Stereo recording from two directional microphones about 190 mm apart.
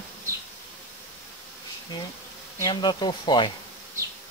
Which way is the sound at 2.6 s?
25° left (ahead or behind).